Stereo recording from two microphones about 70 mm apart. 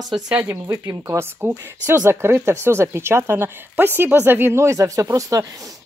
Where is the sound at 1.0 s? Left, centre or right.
Right.